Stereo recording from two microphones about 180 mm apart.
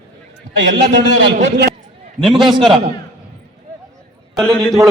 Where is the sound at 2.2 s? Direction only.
Centre (ahead or behind).